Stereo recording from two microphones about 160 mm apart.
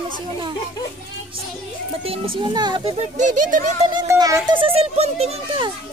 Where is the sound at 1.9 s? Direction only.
35° right (ahead or behind).